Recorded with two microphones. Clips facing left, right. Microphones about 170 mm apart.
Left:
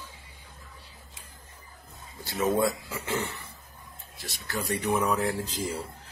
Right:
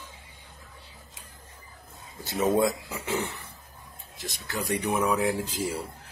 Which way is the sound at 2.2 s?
20° right (ahead or behind).